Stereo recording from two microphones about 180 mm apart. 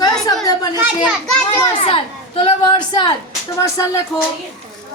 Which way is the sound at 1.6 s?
30° left (ahead or behind).